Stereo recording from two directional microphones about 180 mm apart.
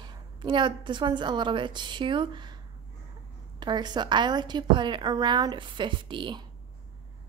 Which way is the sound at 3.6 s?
25° right (ahead or behind).